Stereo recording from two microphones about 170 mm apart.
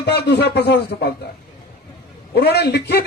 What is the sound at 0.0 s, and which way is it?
Speech, 85° left.